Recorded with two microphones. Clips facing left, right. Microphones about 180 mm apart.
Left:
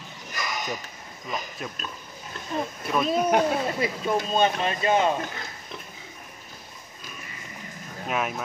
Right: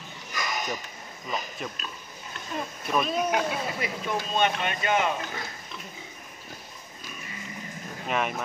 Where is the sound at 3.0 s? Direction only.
35° left (ahead or behind).